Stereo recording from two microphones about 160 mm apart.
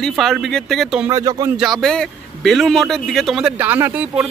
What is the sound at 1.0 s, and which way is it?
Speech, 20° right (ahead or behind).